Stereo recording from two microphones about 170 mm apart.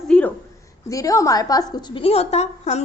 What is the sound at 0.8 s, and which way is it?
A woman's voice, 20° left (ahead or behind).